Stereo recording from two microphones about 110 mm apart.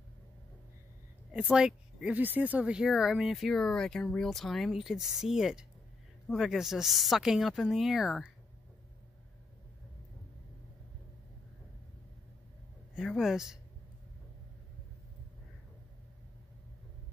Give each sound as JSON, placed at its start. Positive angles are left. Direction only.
{"t": 1.3, "sound": "speech", "side_deg": -10}
{"t": 12.9, "sound": "speech", "side_deg": -5}